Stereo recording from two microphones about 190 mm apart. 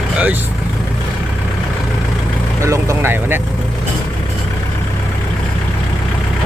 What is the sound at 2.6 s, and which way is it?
Speech, 15° right (ahead or behind).